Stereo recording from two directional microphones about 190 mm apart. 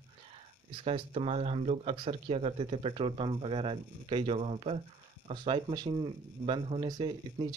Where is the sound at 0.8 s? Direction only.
30° right (ahead or behind).